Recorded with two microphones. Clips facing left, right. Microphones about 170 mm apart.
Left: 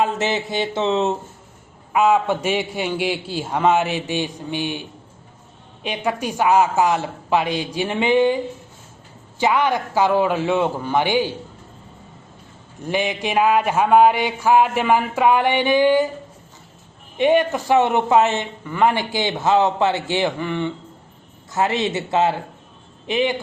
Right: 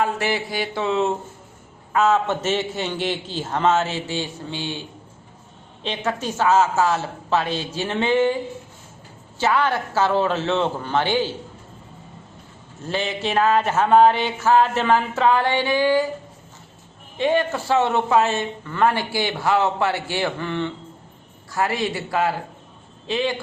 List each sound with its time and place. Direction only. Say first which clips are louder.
0.0 s a sound: left 2 dB; 20° left (ahead or behind)
1.9 s a man's voice: left 2 dB; 15° left (ahead or behind)
9.4 s a man's voice: left 2 dB; 15° left (ahead or behind)
12.8 s a man's voice: left 2 dB; 15° left (ahead or behind)
17.2 s a man's voice: left 4 dB; 15° left (ahead or behind)
21.5 s a sound: left 3 dB; 20° left (ahead or behind)
23.0 s a man's voice: left 3 dB; 20° left (ahead or behind)